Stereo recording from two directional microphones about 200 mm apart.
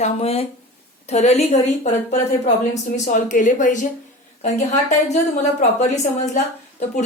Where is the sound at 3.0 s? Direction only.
40° left (ahead or behind).